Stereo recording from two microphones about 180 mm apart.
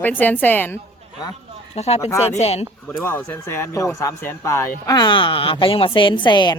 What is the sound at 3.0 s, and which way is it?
Speech, 10° left (ahead or behind).